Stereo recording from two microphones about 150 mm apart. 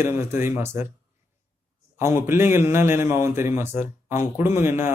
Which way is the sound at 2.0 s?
15° right (ahead or behind).